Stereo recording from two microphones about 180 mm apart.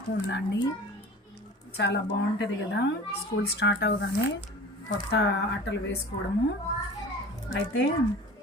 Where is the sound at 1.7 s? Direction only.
70° left (ahead or behind).